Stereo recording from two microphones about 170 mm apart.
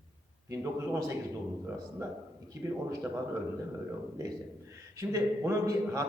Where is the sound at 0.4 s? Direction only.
15° right (ahead or behind).